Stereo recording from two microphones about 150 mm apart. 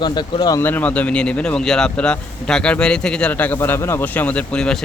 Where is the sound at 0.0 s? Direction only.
30° left (ahead or behind).